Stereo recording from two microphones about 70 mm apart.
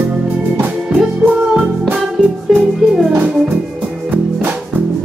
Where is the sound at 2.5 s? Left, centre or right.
Centre.